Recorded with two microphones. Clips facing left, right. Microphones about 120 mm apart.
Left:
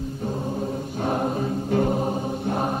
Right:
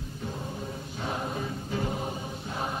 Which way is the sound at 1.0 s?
50° left (ahead or behind).